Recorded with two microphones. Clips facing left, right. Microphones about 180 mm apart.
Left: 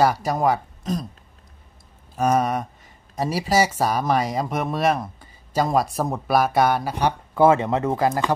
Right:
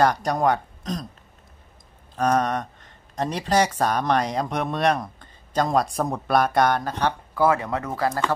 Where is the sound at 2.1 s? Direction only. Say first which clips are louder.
Left 1 dB; 5° left (ahead or behind).